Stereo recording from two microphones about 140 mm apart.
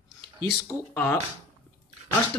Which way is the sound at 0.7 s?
15° left (ahead or behind).